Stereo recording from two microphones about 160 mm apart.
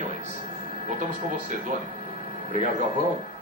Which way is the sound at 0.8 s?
50° right (ahead or behind).